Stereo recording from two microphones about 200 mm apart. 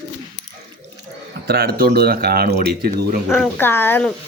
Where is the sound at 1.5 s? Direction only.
50° right (ahead or behind).